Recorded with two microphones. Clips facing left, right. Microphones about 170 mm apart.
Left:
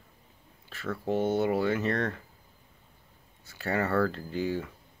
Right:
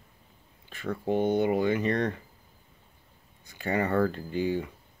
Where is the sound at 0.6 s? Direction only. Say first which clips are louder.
Right 2 dB; 15° right (ahead or behind).